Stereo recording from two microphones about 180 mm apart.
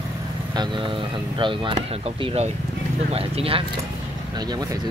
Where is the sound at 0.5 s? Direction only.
25° right (ahead or behind).